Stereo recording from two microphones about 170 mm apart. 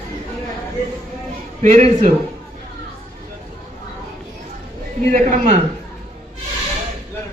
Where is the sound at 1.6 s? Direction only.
45° right (ahead or behind).